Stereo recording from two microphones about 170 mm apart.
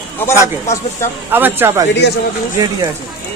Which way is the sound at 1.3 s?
10° right (ahead or behind).